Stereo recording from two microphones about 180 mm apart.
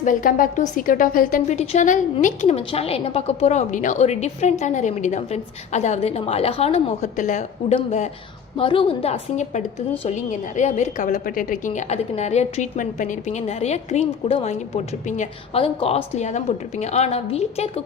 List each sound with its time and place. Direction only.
0.0 s a woman's voice: 45° left (ahead or behind)
8.5 s speech: 30° left (ahead or behind)
15.6 s speech: 30° left (ahead or behind)